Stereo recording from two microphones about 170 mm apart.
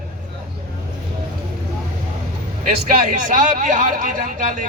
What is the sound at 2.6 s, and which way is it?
A man's voice, 55° right (ahead or behind).